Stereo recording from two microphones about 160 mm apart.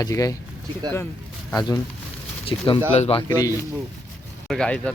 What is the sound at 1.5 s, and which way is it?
Speech, 25° left (ahead or behind).